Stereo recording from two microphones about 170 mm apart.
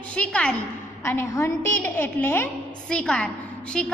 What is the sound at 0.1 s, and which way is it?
A woman's voice, 5° left (ahead or behind).